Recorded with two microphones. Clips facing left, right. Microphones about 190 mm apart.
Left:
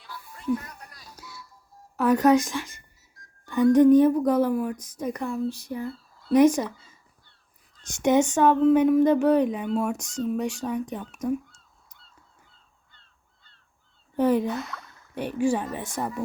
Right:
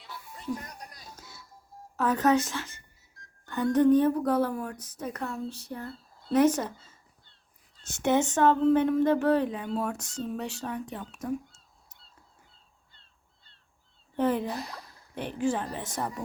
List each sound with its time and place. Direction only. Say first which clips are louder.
0.0 s music: left 1 dB; 25° right (ahead or behind)
0.5 s music: left 8 dB; 40° right (ahead or behind)
0.9 s music: right 1 dB; 20° right (ahead or behind)
2.0 s speech: left 5 dB; 10° left (ahead or behind)
12.9 s crow: left 2 dB; 30° right (ahead or behind)
14.2 s speech: left 5 dB; 15° left (ahead or behind)
14.4 s speech: left 5 dB; 35° right (ahead or behind)
15.4 s speech: left 4 dB; 10° left (ahead or behind)